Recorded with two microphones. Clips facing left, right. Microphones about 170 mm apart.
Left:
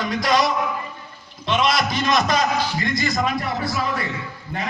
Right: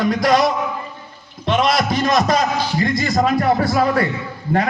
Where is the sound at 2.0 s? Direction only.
35° right (ahead or behind).